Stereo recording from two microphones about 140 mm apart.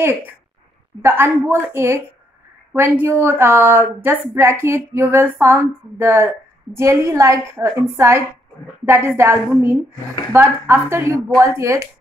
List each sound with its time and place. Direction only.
1.0 s a woman's voice: 15° right (ahead or behind)